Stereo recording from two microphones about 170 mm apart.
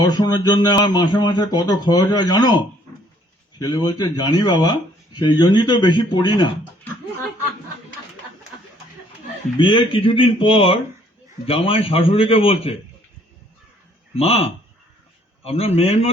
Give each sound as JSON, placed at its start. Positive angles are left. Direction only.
{"t": 0.0, "sound": "speech", "side_deg": 25}
{"t": 9.6, "sound": "a man's voice", "side_deg": 30}
{"t": 14.2, "sound": "a man's voice", "side_deg": 35}